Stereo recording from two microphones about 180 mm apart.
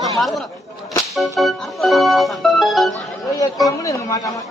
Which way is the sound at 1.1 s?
Centre (ahead or behind).